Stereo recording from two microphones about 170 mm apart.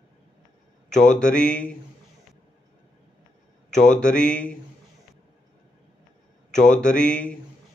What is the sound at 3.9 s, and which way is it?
Speech, 5° left (ahead or behind).